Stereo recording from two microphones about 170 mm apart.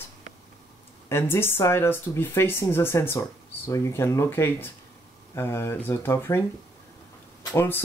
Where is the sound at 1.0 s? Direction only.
15° left (ahead or behind).